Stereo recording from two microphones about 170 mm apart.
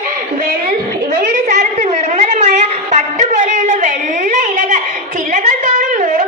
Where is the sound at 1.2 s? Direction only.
50° right (ahead or behind).